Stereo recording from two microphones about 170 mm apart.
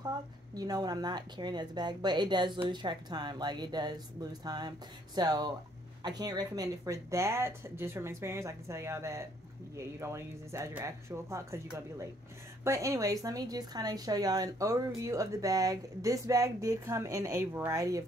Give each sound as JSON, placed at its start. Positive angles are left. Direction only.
{"t": 0.6, "sound": "speech", "side_deg": -25}